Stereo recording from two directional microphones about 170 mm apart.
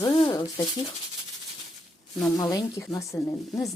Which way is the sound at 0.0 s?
25° left (ahead or behind).